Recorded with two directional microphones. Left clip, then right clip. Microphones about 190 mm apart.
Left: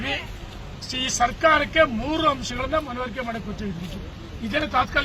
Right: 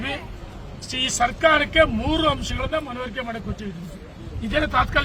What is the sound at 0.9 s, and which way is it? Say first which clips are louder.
Speech: right 1 dB; 35° right (ahead or behind).